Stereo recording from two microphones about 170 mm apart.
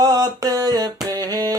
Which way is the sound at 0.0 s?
20° right (ahead or behind).